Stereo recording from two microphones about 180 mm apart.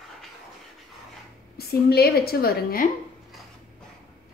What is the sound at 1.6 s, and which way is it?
A woman's voice, 60° left (ahead or behind).